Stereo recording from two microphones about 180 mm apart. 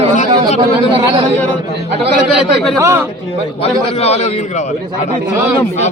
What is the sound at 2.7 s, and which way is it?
Speech, 15° right (ahead or behind).